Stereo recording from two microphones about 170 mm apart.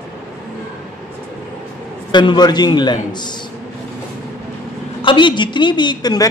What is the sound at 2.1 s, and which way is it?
A man's voice, 25° left (ahead or behind).